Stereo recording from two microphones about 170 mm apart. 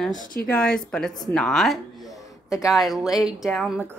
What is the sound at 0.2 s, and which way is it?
Speech, 55° left (ahead or behind).